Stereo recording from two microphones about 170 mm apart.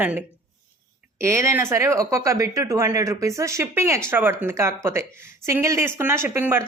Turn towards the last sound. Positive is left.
turn(degrees=-15)  # may be behind; listen again after turning